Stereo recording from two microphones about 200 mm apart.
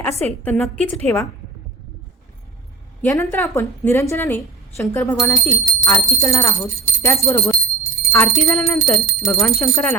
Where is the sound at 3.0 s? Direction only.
10° left (ahead or behind).